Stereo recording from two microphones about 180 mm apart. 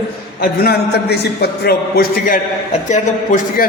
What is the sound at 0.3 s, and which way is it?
A man's voice, 60° left (ahead or behind).